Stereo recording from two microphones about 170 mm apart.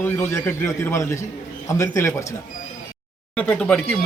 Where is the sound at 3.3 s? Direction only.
5° left (ahead or behind).